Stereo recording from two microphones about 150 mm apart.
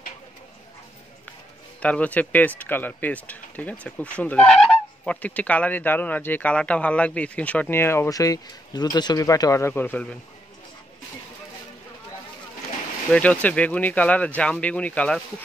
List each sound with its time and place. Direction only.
1.8 s speech: 10° left (ahead or behind)
13.1 s speech: 10° left (ahead or behind)